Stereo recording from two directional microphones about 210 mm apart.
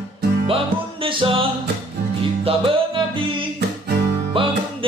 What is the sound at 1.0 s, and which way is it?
Music, 25° right (ahead or behind).